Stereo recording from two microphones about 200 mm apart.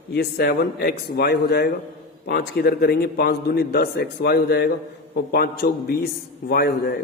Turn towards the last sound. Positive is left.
turn(degrees=50)  # may be behind; listen again after turning